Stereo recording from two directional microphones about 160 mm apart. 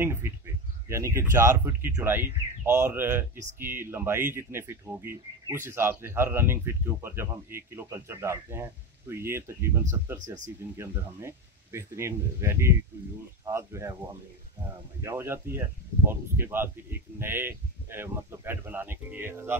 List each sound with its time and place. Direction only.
0.0 s speech: 15° right (ahead or behind)
15.0 s speech: 15° right (ahead or behind)